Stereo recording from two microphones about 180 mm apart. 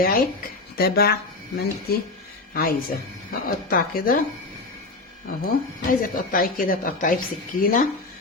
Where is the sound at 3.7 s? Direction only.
55° left (ahead or behind).